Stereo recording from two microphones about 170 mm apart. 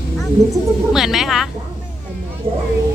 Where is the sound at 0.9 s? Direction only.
Centre (ahead or behind).